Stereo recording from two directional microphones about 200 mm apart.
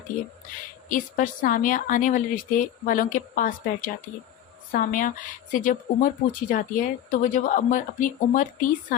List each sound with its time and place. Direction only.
0.9 s a woman's voice: 40° left (ahead or behind)